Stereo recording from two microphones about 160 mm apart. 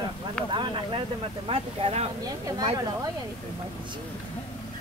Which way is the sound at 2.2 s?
25° right (ahead or behind).